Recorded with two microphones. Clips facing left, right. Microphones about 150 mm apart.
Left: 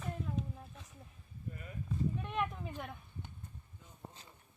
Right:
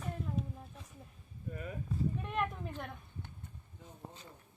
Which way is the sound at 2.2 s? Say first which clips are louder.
Right 1 dB; centre (ahead or behind).